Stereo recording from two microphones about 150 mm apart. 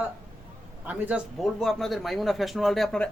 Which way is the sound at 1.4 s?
Centre (ahead or behind).